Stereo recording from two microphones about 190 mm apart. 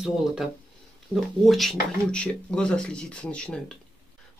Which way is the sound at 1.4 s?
Centre (ahead or behind).